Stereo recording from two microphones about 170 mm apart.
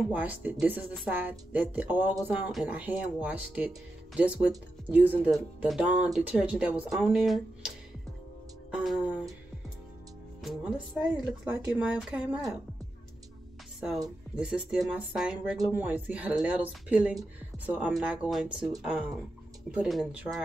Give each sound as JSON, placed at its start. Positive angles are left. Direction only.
{"t": 0.1, "sound": "speech", "side_deg": -10}
{"t": 8.7, "sound": "music", "side_deg": -5}
{"t": 10.4, "sound": "speech", "side_deg": -5}
{"t": 14.3, "sound": "speech", "side_deg": -5}
{"t": 19.7, "sound": "speech", "side_deg": -5}